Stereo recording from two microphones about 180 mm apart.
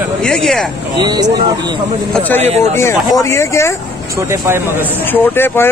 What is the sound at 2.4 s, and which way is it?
Speech, 40° right (ahead or behind).